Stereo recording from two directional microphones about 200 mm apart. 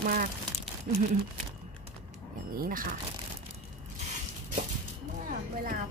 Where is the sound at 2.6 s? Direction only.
45° right (ahead or behind).